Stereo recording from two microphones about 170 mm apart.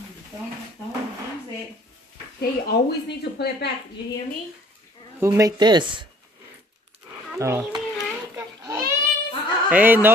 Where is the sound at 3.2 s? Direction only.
70° left (ahead or behind).